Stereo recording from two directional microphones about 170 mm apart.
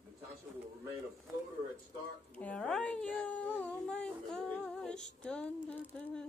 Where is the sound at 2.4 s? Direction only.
5° left (ahead or behind).